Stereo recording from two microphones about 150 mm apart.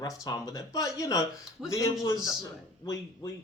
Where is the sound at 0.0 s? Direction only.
25° left (ahead or behind).